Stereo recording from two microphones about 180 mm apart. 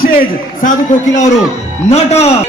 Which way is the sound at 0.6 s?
45° left (ahead or behind).